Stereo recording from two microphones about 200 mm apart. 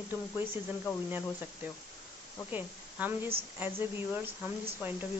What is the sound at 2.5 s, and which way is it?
A woman's voice, 10° right (ahead or behind).